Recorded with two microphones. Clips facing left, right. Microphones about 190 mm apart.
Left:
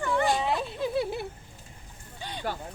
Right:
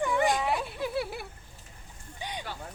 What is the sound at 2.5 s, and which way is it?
Speech, 45° left (ahead or behind).